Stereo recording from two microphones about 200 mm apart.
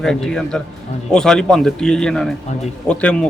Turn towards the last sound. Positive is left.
turn(degrees=5)  # may be behind; listen again after turning